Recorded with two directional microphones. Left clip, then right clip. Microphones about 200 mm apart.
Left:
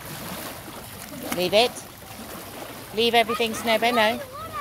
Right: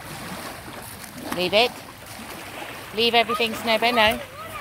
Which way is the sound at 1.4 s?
5° left (ahead or behind).